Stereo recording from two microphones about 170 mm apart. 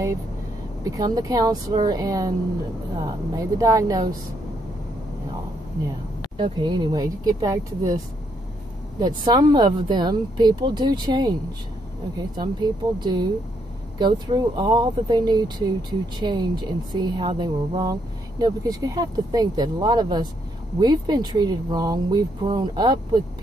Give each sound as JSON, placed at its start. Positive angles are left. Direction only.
{"t": 0.8, "sound": "speech", "side_deg": -20}
{"t": 6.3, "sound": "speech", "side_deg": -30}
{"t": 9.0, "sound": "speech", "side_deg": -25}
{"t": 12.4, "sound": "speech", "side_deg": -25}